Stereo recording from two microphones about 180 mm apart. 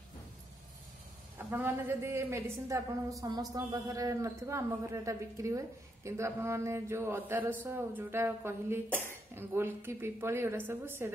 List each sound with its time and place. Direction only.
1.5 s a woman's voice: 10° right (ahead or behind)